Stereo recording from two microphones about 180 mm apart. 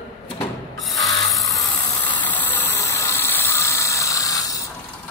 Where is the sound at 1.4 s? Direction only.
15° left (ahead or behind).